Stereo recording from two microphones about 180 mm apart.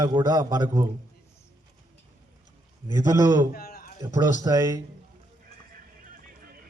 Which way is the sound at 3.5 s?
55° left (ahead or behind).